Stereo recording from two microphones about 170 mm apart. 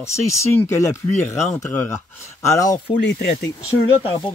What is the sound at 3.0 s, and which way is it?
Speech, 90° left.